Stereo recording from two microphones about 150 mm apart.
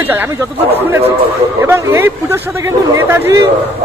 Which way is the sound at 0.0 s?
15° right (ahead or behind).